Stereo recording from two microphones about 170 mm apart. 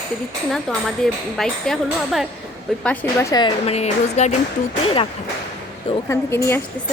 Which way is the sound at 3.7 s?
40° left (ahead or behind).